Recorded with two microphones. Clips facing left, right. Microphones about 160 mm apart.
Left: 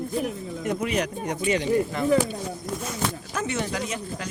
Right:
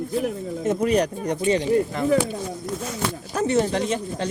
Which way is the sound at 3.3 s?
35° right (ahead or behind).